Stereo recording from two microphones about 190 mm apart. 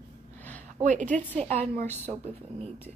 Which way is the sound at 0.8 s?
40° right (ahead or behind).